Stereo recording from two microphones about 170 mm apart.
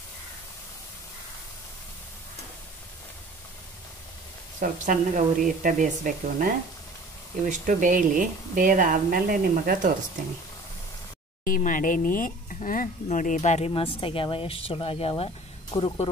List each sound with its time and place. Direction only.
4.6 s speech: 50° right (ahead or behind)
11.4 s speech: 50° left (ahead or behind); by 16.1 s 35° left (ahead or behind)